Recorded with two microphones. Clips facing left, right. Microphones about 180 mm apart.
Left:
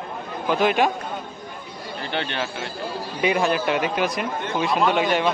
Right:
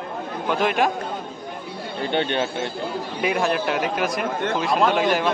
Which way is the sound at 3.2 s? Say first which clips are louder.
Left 1 dB; centre (ahead or behind).